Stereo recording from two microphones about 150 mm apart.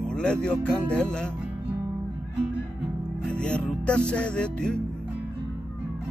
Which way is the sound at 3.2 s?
5° left (ahead or behind).